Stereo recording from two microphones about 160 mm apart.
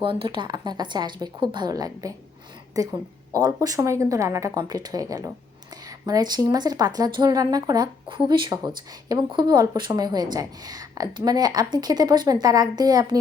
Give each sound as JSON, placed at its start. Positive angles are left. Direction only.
{"t": 0.0, "sound": "speech", "side_deg": -30}